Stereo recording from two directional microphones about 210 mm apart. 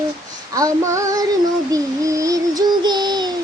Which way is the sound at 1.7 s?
15° right (ahead or behind).